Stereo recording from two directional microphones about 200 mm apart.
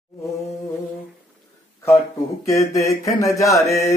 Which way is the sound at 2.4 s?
15° left (ahead or behind).